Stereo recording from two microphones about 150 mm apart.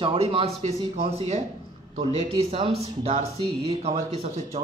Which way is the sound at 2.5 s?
40° right (ahead or behind).